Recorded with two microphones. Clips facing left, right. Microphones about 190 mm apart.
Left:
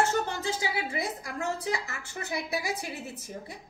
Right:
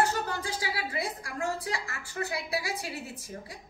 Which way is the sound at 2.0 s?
20° left (ahead or behind).